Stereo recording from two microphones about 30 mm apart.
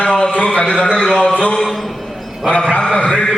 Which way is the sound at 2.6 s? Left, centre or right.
Left.